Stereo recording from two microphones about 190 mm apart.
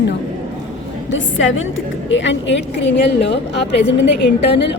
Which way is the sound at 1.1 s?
85° left.